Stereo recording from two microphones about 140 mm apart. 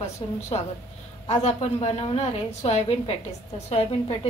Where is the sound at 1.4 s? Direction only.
50° left (ahead or behind).